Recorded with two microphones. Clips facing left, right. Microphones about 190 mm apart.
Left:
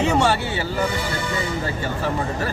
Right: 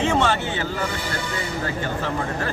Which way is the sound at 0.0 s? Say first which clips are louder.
Left 2 dB; 10° left (ahead or behind).